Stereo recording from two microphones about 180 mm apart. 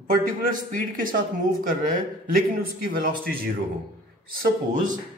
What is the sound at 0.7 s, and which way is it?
Speech, 50° right (ahead or behind).